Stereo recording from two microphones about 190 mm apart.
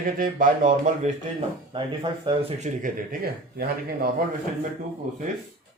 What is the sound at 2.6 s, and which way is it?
Speech, 50° right (ahead or behind).